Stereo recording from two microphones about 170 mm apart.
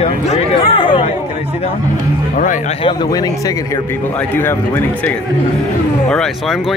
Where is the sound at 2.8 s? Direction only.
25° left (ahead or behind); by 6.6 s 5° left (ahead or behind).